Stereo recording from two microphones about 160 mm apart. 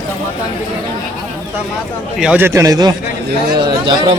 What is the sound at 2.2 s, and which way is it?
A man's voice, 10° right (ahead or behind).